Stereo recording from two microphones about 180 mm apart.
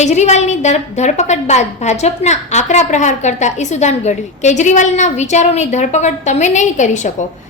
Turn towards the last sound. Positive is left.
turn(degrees=40)  # may be behind; listen again after turning